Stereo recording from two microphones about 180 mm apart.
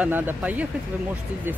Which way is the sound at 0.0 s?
10° right (ahead or behind).